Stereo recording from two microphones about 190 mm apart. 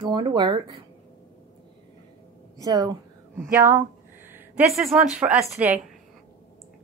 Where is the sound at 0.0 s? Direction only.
25° right (ahead or behind).